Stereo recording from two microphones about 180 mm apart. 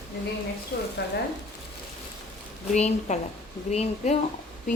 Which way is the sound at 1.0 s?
70° left (ahead or behind).